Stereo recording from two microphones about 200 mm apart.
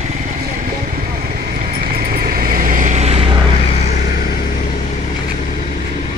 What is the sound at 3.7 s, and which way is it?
Vehicle, 30° left (ahead or behind).